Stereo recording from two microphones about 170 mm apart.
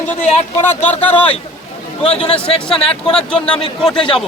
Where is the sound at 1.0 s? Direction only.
10° left (ahead or behind).